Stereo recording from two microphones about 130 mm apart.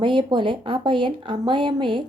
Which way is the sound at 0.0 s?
40° right (ahead or behind).